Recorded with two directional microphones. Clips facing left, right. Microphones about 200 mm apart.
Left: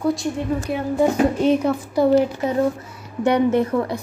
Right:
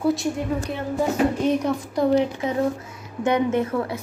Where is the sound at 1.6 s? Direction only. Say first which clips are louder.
Left 3 dB; 5° left (ahead or behind).